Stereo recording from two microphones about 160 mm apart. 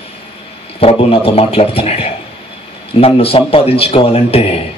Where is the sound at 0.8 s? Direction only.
35° left (ahead or behind).